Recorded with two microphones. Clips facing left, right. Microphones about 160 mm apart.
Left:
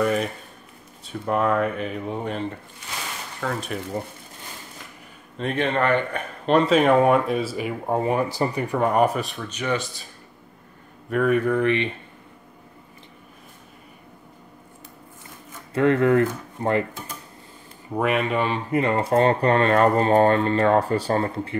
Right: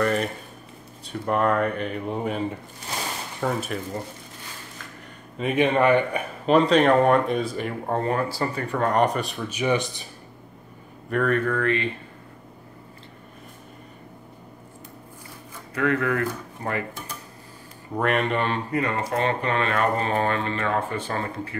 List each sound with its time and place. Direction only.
0.0 s speech: 5° left (ahead or behind)
3.4 s speech: 20° right (ahead or behind)
5.4 s speech: 10° right (ahead or behind)
11.1 s speech: 5° left (ahead or behind)
15.7 s speech: 30° left (ahead or behind)
17.9 s speech: 5° left (ahead or behind)
18.7 s speech: 25° left (ahead or behind)